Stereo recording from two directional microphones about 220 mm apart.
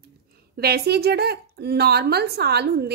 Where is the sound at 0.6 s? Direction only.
45° right (ahead or behind).